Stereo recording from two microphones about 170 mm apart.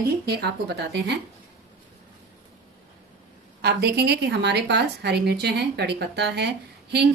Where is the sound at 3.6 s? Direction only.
75° right (ahead or behind).